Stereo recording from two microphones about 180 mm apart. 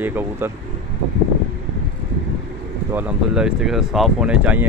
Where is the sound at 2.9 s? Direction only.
10° right (ahead or behind).